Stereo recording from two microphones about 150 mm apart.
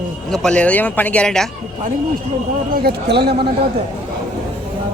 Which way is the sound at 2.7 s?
90° right.